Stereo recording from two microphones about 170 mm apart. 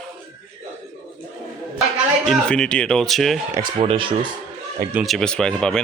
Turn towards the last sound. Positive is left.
turn(degrees=5)  # may be behind; listen again after turning